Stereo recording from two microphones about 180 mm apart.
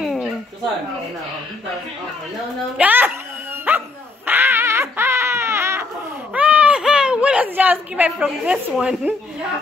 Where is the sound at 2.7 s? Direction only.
10° right (ahead or behind).